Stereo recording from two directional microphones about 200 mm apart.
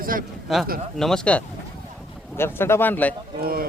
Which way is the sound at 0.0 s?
45° right (ahead or behind).